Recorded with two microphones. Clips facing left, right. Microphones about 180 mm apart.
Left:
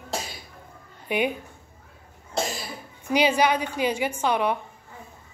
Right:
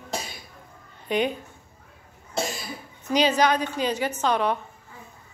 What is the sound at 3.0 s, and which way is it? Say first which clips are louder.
A woman's voice: even; 10° left (ahead or behind).